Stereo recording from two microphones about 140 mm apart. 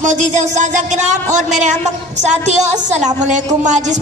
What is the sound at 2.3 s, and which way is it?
A woman's voice, 55° right (ahead or behind).